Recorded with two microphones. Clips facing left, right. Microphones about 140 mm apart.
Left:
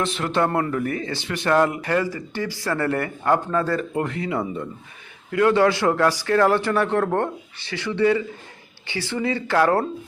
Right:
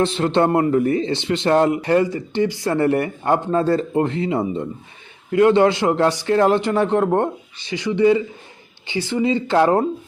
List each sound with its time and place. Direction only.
0.0 s speech: 25° right (ahead or behind)